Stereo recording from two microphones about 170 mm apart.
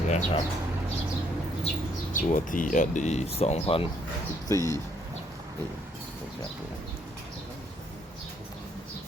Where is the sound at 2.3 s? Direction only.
50° left (ahead or behind); by 3.8 s 35° left (ahead or behind).